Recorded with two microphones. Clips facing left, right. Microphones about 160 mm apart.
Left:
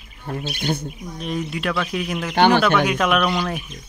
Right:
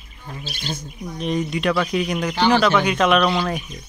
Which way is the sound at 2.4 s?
55° left (ahead or behind).